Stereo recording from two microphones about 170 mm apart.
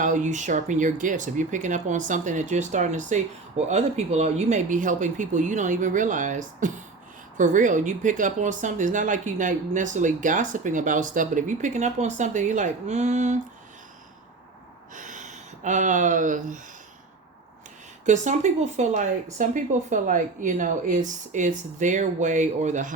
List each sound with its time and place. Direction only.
0.0 s speech: 50° right (ahead or behind)
14.9 s speech: 50° right (ahead or behind)
18.0 s speech: 45° right (ahead or behind)